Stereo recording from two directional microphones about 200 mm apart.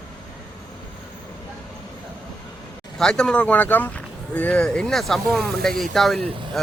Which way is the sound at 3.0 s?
5° left (ahead or behind).